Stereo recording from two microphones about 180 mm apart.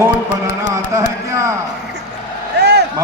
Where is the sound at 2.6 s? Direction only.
70° right (ahead or behind).